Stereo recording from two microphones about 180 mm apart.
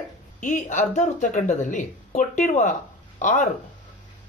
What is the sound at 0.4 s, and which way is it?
Speech, 45° left (ahead or behind).